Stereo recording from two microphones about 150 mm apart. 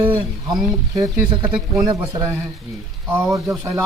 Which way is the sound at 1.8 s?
25° right (ahead or behind).